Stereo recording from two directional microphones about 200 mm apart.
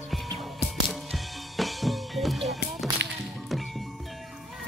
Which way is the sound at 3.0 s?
60° right (ahead or behind).